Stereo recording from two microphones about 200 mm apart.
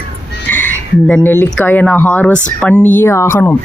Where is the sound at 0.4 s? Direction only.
10° left (ahead or behind).